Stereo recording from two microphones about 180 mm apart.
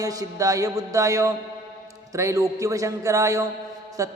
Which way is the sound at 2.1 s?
15° right (ahead or behind).